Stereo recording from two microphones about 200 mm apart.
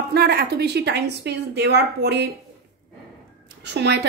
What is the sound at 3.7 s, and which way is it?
Speech, 55° right (ahead or behind).